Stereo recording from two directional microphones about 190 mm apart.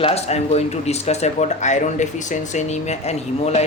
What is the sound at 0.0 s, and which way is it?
Speech, 35° left (ahead or behind).